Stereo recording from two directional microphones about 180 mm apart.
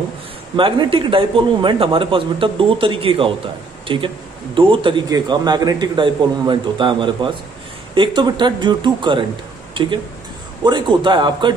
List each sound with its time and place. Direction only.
0.6 s speech: 30° right (ahead or behind)
10.6 s speech: 25° right (ahead or behind)